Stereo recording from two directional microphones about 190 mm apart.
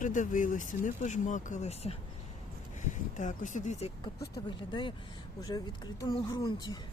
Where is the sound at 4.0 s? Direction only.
25° left (ahead or behind).